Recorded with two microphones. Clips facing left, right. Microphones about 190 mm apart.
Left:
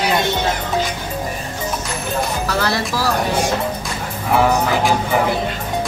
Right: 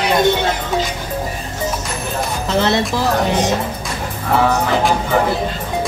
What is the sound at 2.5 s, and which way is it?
Speech, 20° right (ahead or behind).